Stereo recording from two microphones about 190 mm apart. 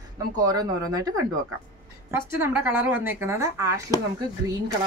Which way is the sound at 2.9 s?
10° right (ahead or behind).